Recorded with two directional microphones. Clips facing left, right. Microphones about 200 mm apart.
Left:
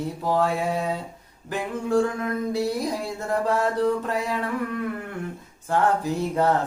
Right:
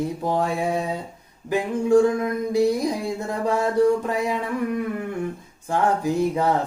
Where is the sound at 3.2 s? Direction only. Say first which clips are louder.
Even; 15° right (ahead or behind).